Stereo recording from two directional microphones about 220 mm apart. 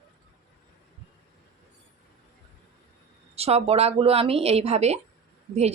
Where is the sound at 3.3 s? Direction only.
25° right (ahead or behind).